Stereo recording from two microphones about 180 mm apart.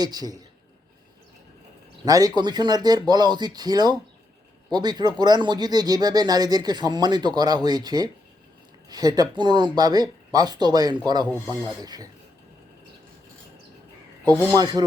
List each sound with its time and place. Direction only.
0.0 s speech: 20° right (ahead or behind)
2.0 s speech: 20° right (ahead or behind)
14.5 s speech: 20° right (ahead or behind)